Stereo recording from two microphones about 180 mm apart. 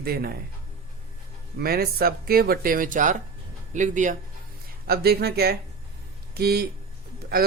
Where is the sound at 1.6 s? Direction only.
55° right (ahead or behind).